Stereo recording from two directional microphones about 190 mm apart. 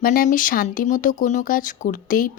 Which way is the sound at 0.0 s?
45° left (ahead or behind).